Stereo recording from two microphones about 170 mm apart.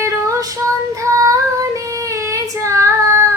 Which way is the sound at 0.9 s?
20° right (ahead or behind).